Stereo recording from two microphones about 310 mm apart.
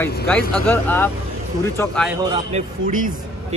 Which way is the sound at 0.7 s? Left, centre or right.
Centre.